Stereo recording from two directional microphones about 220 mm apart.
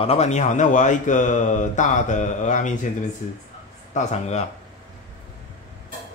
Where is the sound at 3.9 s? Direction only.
30° left (ahead or behind).